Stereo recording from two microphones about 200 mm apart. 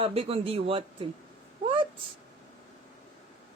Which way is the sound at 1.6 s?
25° right (ahead or behind).